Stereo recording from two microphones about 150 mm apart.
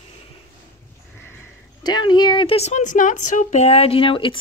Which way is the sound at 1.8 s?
30° left (ahead or behind).